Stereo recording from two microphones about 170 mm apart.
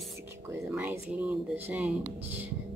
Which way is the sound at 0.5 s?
10° right (ahead or behind).